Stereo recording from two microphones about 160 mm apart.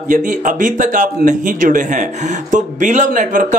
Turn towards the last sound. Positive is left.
turn(degrees=-55)  # may be behind; listen again after turning